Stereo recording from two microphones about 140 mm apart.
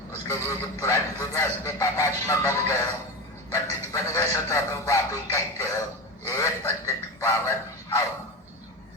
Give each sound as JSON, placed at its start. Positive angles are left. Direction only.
{"t": 0.3, "sound": "a man's voice", "side_deg": 20}